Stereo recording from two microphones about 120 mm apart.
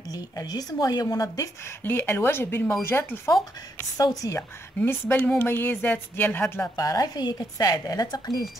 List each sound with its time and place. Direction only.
0.1 s speech: 30° left (ahead or behind)
1.8 s speech: 15° left (ahead or behind)
4.0 s speech: 30° left (ahead or behind)
4.4 s speech: 20° left (ahead or behind)
6.8 s speech: 30° left (ahead or behind)